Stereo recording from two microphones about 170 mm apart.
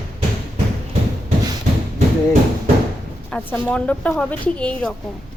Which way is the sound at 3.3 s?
5° left (ahead or behind).